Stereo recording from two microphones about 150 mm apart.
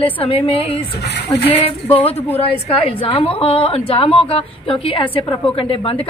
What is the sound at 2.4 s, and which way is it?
A woman's voice, 40° left (ahead or behind).